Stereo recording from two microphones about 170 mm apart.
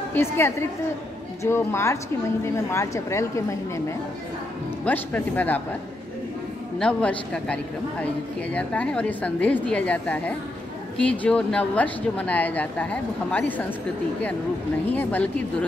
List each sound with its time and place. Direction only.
0.1 s speech: 15° left (ahead or behind)
4.8 s speech: 10° left (ahead or behind)
6.8 s speech: 5° left (ahead or behind)
14.9 s speech: 10° left (ahead or behind)